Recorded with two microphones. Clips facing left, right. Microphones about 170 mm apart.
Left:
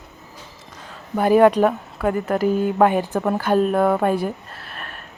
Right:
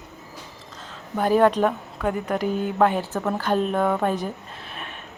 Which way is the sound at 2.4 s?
45° left (ahead or behind).